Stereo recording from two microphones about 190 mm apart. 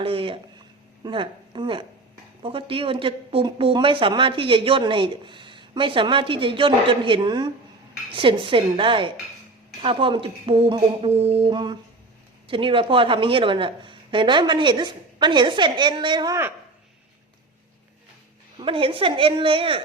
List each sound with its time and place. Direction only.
0.0 s speech: 30° right (ahead or behind)
18.6 s speech: 30° right (ahead or behind)